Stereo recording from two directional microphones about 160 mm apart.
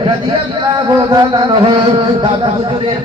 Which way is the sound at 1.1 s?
25° right (ahead or behind).